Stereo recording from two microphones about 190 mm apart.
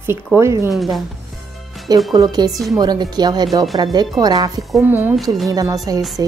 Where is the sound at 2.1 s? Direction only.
20° right (ahead or behind).